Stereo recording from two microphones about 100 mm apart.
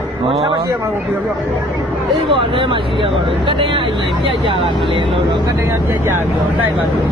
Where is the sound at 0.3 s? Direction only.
65° right (ahead or behind).